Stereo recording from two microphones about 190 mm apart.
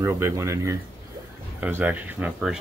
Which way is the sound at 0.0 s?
15° right (ahead or behind).